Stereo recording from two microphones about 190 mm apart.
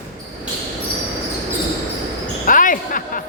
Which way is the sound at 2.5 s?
45° left (ahead or behind).